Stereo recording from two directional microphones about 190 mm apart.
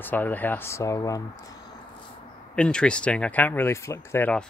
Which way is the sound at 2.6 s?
5° left (ahead or behind).